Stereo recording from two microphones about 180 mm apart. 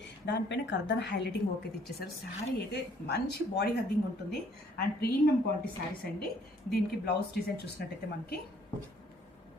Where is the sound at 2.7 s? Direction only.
65° left (ahead or behind).